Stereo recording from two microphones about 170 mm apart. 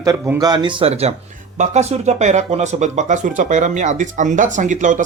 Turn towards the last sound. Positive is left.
turn(degrees=-45)  # may be behind; listen again after turning